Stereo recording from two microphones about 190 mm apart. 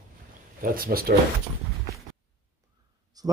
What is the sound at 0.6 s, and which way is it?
Speech, 50° right (ahead or behind).